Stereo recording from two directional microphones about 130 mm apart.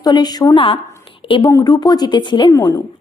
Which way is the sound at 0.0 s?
35° left (ahead or behind).